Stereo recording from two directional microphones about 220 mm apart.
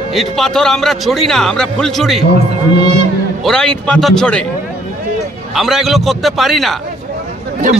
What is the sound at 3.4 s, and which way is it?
A man's voice, 5° left (ahead or behind).